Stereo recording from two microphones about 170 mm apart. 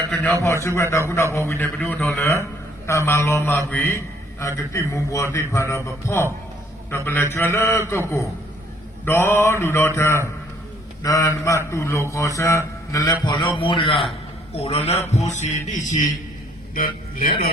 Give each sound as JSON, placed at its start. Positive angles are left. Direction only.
{"t": 0.1, "sound": "a man's voice", "side_deg": 10}
{"t": 15.1, "sound": "music", "side_deg": 45}
{"t": 16.7, "sound": "speech", "side_deg": 55}